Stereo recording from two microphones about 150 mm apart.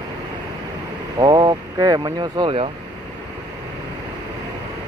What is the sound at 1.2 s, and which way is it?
Speech, 30° right (ahead or behind).